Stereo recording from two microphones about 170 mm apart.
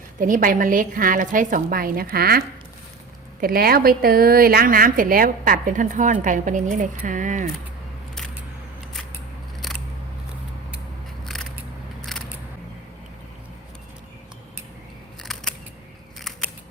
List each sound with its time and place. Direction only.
0.2 s a woman's voice: 50° right (ahead or behind)
3.4 s a woman's voice: 60° right (ahead or behind)
9.6 s scissors: centre (ahead or behind)
11.3 s a sound: centre (ahead or behind)
12.1 s single-lens reflex camera: 5° left (ahead or behind)
15.2 s scissors: centre (ahead or behind)